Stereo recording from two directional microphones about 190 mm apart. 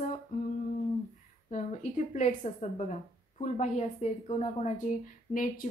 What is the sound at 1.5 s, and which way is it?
A woman's voice, 40° left (ahead or behind).